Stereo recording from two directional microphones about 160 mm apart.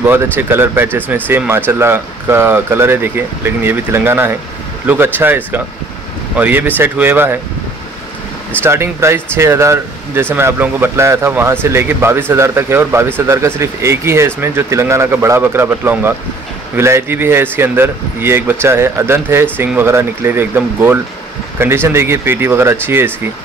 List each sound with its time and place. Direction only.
0.4 s speech: 15° right (ahead or behind)
8.6 s speech: 15° right (ahead or behind)